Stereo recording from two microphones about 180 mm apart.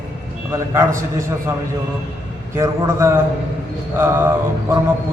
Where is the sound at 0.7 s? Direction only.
15° right (ahead or behind).